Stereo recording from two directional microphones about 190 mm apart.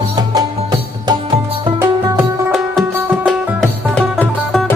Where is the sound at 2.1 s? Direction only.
Centre (ahead or behind).